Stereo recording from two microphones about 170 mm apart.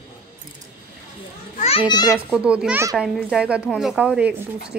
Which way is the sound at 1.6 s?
35° left (ahead or behind).